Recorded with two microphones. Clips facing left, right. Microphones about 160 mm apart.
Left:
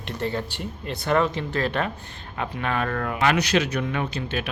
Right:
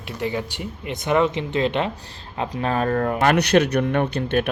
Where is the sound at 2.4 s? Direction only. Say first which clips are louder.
Right 4 dB; 30° right (ahead or behind).